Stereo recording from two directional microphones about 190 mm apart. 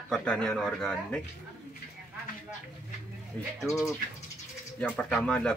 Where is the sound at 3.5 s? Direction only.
Centre (ahead or behind).